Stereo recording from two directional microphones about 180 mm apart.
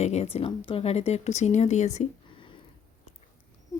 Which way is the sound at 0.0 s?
35° left (ahead or behind).